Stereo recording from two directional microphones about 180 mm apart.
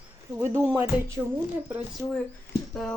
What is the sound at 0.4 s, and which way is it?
Speech, 15° right (ahead or behind).